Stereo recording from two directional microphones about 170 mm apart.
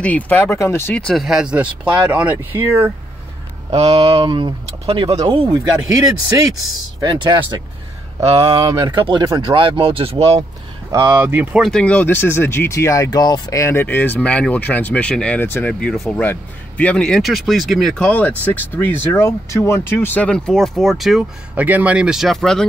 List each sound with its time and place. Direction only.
0.0 s speech: 10° left (ahead or behind); by 2.9 s 15° right (ahead or behind)
3.7 s speech: 35° right (ahead or behind)
7.0 s speech: 25° right (ahead or behind)
8.5 s speech: 20° right (ahead or behind)
10.9 s speech: 15° right (ahead or behind); by 22.7 s 5° left (ahead or behind)